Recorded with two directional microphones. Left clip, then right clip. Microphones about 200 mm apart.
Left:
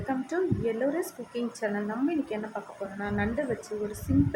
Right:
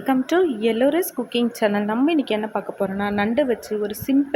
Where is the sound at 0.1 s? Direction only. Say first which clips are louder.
Right 10 dB; 50° right (ahead or behind).